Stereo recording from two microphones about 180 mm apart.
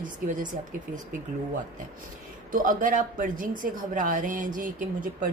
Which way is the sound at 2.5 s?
50° right (ahead or behind).